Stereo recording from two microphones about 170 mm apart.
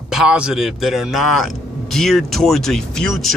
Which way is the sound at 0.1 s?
5° right (ahead or behind).